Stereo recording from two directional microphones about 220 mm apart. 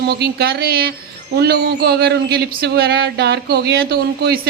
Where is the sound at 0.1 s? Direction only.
45° right (ahead or behind).